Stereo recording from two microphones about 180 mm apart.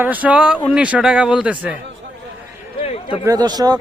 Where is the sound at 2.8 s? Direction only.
30° left (ahead or behind).